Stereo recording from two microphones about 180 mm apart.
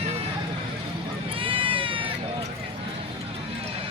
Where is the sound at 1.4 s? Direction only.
30° right (ahead or behind).